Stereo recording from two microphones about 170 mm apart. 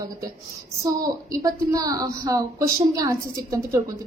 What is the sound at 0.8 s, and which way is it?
A woman's voice, 20° right (ahead or behind).